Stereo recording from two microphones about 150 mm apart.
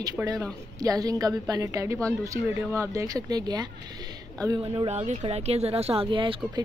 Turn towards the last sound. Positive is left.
turn(degrees=-35)  # may be behind; listen again after turning